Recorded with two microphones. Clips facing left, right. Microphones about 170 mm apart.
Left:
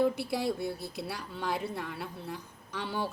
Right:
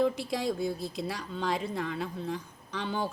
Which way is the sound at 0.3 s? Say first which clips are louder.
Right 1 dB; 5° left (ahead or behind).